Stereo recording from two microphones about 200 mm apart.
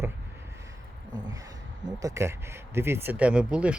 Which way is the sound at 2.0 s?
15° right (ahead or behind).